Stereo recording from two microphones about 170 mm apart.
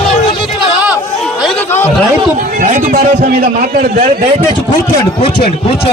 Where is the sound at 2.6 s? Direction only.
50° right (ahead or behind).